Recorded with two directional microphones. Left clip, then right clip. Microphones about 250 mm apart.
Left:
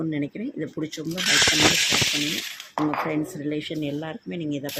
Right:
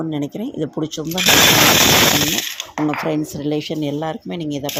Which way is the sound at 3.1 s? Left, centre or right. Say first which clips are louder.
Right 6 dB; centre.